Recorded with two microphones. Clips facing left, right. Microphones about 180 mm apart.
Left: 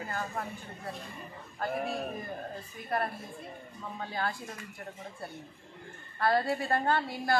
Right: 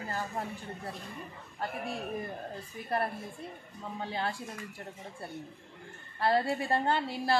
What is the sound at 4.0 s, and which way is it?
Speech, 25° right (ahead or behind).